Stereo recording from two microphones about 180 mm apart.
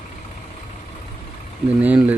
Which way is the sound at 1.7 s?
10° right (ahead or behind).